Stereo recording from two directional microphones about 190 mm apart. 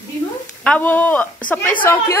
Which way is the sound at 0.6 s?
10° left (ahead or behind).